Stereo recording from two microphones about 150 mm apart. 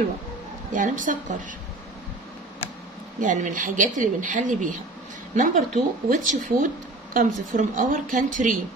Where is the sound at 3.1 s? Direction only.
60° right (ahead or behind).